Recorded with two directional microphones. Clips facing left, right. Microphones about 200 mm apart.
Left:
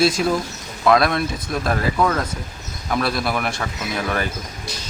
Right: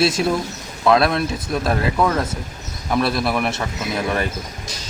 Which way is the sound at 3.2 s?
Centre (ahead or behind).